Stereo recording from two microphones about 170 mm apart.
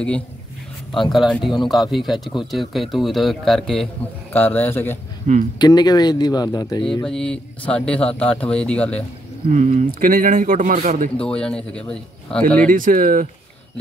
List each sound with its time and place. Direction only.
0.9 s speech: centre (ahead or behind)
5.2 s speech: 50° right (ahead or behind)
5.6 s speech: 25° left (ahead or behind)
6.9 s speech: 5° left (ahead or behind)
9.5 s a man's voice: 45° right (ahead or behind)
11.1 s speech: 5° left (ahead or behind)
12.7 s a man's voice: 55° right (ahead or behind)